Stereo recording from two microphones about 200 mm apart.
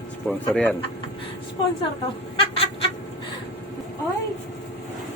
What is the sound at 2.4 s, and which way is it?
Chicken, 30° left (ahead or behind).